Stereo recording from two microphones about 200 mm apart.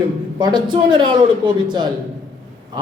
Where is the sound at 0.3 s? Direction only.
20° right (ahead or behind).